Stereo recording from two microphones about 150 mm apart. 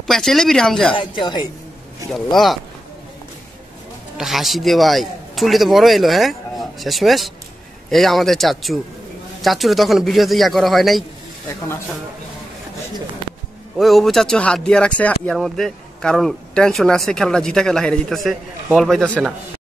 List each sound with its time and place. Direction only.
0.0 s a man's voice: centre (ahead or behind)
0.9 s speech: 30° left (ahead or behind)
2.1 s a man's voice: centre (ahead or behind)
4.2 s a man's voice: centre (ahead or behind)
13.7 s a man's voice: centre (ahead or behind)